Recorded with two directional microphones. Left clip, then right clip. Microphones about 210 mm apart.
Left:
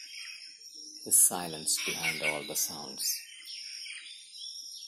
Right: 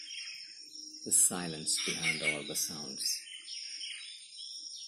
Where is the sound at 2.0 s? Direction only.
Centre (ahead or behind).